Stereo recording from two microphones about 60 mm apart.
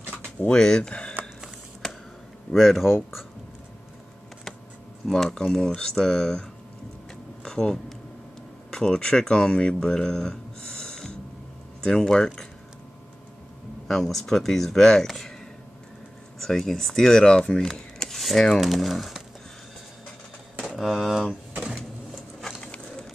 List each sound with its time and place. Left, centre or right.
0.4 s speech: centre
2.5 s speech: centre
5.0 s speech: centre
7.4 s speech: centre
13.8 s speech: centre
16.3 s speech: centre
17.7 s rub: centre
18.1 s a sound: centre
18.6 s speech: centre
20.6 s speech: centre
22.6 s a sound: centre